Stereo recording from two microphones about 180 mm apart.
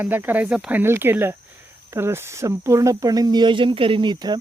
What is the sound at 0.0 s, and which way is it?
Speech, 10° right (ahead or behind).